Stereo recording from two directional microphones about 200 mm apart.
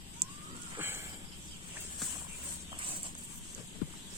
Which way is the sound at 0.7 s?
10° right (ahead or behind).